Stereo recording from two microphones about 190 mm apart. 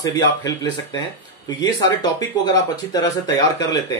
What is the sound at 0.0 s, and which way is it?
Speech, 20° left (ahead or behind).